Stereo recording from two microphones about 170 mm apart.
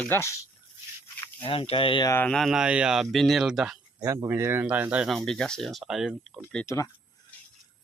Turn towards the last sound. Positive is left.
turn(degrees=0)  # may be behind; listen again after turning